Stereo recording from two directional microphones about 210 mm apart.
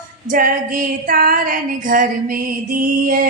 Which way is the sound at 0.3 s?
40° right (ahead or behind).